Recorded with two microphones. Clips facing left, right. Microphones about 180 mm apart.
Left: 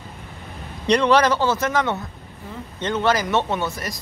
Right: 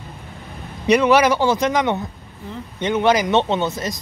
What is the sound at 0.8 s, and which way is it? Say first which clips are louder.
Speech: right 2 dB; 5° right (ahead or behind).